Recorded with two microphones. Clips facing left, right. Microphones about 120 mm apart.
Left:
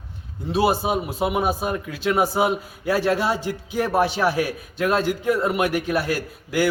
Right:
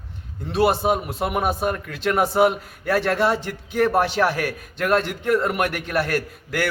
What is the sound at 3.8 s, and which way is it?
Speech, 60° right (ahead or behind).